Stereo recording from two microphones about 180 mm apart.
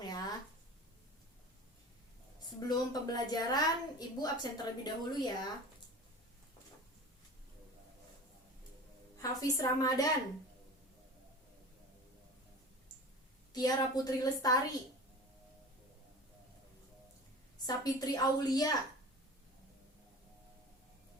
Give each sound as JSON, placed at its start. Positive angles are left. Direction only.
{"t": 0.0, "sound": "a sound", "side_deg": 20}
{"t": 2.6, "sound": "a woman's voice", "side_deg": 20}
{"t": 9.1, "sound": "a woman's voice", "side_deg": 20}
{"t": 13.5, "sound": "a woman's voice", "side_deg": 20}
{"t": 17.7, "sound": "a woman's voice", "side_deg": 20}